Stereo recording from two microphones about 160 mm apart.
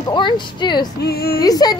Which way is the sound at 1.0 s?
80° left.